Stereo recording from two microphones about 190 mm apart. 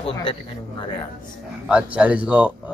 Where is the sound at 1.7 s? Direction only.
5° right (ahead or behind).